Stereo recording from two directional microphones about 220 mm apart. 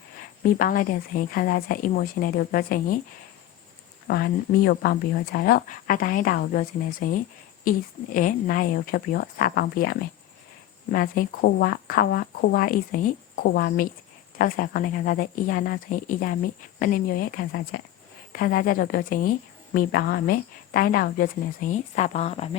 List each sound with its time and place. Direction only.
0.4 s a woman's voice: 40° left (ahead or behind)
4.1 s a woman's voice: 45° left (ahead or behind); by 22.4 s 30° left (ahead or behind)